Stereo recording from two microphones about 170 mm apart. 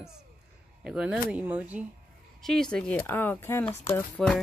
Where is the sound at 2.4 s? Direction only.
5° left (ahead or behind).